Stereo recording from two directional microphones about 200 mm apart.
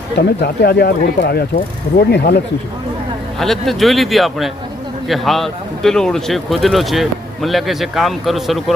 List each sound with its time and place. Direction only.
0.2 s speech: 50° left (ahead or behind)
3.3 s a man's voice: centre (ahead or behind)